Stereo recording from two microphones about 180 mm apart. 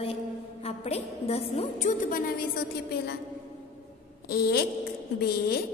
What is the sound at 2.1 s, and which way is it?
A woman's voice, 55° left (ahead or behind).